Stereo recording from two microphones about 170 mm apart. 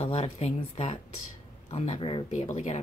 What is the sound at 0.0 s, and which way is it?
Speech, 35° left (ahead or behind).